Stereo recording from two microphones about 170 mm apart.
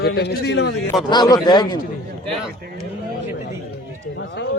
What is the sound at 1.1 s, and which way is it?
Speech, 25° left (ahead or behind).